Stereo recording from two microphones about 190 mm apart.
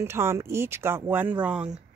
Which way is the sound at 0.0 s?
15° right (ahead or behind).